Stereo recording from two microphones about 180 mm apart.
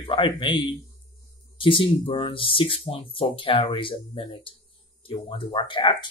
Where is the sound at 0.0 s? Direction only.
30° left (ahead or behind).